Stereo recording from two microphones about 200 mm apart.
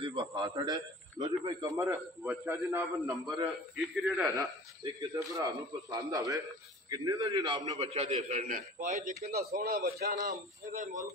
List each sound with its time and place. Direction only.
0.0 s a man's voice: 30° right (ahead or behind)
0.3 s a man's voice: 15° right (ahead or behind)
7.8 s a man's voice: 30° right (ahead or behind); by 10.9 s 45° right (ahead or behind)